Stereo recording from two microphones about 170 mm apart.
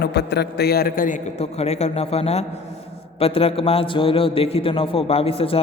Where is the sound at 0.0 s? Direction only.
75° left (ahead or behind).